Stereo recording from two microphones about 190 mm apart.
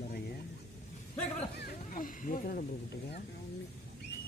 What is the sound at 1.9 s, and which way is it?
Speech, 45° left (ahead or behind).